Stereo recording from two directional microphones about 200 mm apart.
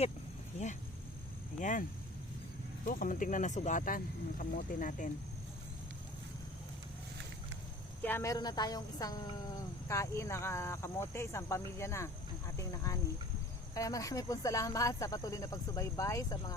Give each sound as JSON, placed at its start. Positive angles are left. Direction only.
{"t": 1.5, "sound": "speech", "side_deg": 40}
{"t": 2.8, "sound": "speech", "side_deg": 40}
{"t": 8.0, "sound": "speech", "side_deg": 15}